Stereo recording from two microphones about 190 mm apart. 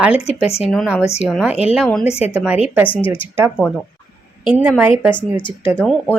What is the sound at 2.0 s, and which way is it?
Speech, 35° left (ahead or behind).